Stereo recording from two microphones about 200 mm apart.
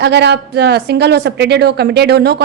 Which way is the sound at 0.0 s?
55° right (ahead or behind).